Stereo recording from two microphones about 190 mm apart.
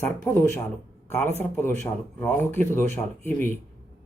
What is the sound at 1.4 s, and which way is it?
Speech, 10° left (ahead or behind).